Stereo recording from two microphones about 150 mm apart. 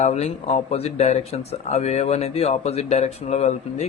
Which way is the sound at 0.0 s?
50° left (ahead or behind).